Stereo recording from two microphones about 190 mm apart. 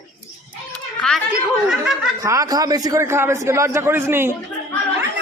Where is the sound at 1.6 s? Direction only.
5° right (ahead or behind).